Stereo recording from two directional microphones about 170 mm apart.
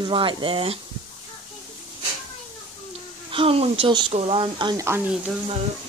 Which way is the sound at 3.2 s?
30° right (ahead or behind).